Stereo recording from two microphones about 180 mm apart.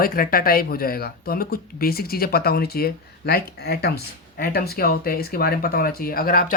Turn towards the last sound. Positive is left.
turn(degrees=50)  # may be behind; listen again after turning